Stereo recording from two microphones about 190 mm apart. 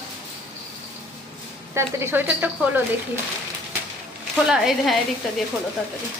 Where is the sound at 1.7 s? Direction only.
10° right (ahead or behind).